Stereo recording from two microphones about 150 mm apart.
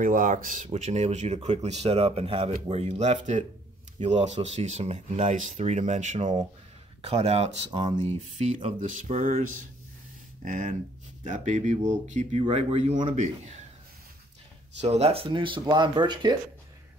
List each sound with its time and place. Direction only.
0.0 s speech: 65° right (ahead or behind)
0.7 s speech: 50° right (ahead or behind)
10.4 s speech: 60° right (ahead or behind)
14.8 s speech: 45° right (ahead or behind); by 16.3 s 30° right (ahead or behind)